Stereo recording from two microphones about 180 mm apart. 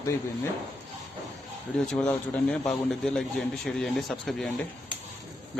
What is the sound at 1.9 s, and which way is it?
A man's voice, 5° left (ahead or behind).